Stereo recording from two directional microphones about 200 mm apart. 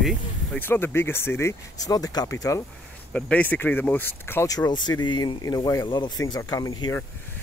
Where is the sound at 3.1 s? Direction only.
5° left (ahead or behind).